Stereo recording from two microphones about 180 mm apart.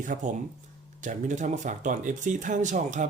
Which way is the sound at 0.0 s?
45° right (ahead or behind).